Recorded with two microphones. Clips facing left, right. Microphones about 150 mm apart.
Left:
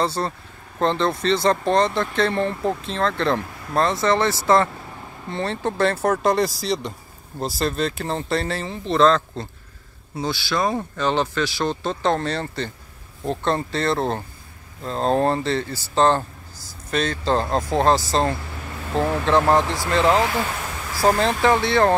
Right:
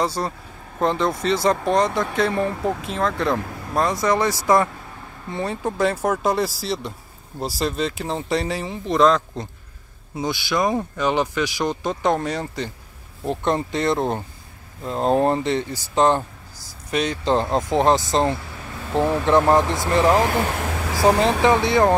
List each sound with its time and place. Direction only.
0.0 s speech: 10° right (ahead or behind)
20.4 s a sound: 70° right (ahead or behind)
21.4 s speech: 15° right (ahead or behind)